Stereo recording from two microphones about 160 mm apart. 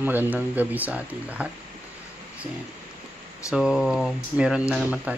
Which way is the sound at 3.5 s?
5° right (ahead or behind).